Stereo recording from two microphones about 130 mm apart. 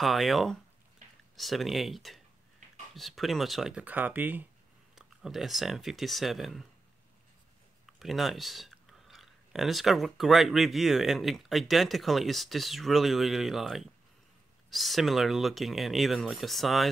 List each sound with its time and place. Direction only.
0.0 s speech: centre (ahead or behind)
4.9 s speech: centre (ahead or behind)
8.0 s speech: centre (ahead or behind)